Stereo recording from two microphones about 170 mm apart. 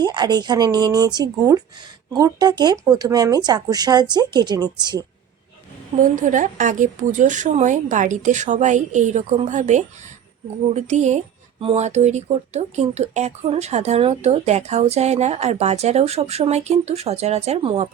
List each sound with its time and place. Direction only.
0.0 s speech: 25° right (ahead or behind)
6.0 s a woman's voice: 50° right (ahead or behind)